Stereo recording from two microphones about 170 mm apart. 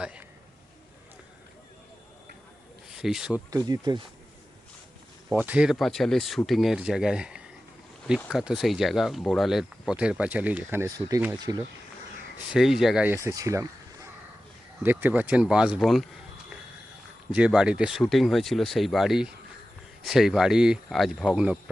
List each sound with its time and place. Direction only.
0.0 s a man's voice: 5° right (ahead or behind)
2.9 s speech: 5° right (ahead or behind)
3.5 s speech: 25° right (ahead or behind)
5.3 s speech: 10° right (ahead or behind); by 11.6 s 25° right (ahead or behind)
12.5 s speech: centre (ahead or behind)
13.2 s speech: 20° right (ahead or behind); by 16.0 s centre (ahead or behind)
17.3 s speech: 5° right (ahead or behind)